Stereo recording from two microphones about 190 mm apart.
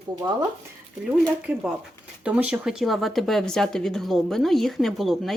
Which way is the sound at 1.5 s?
5° right (ahead or behind).